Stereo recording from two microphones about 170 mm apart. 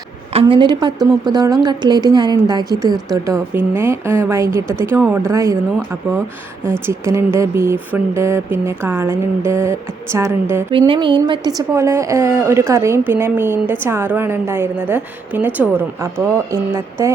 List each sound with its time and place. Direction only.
0.3 s speech: 30° right (ahead or behind)
6.7 s a woman's voice: 15° right (ahead or behind)
10.7 s a woman's voice: 30° right (ahead or behind)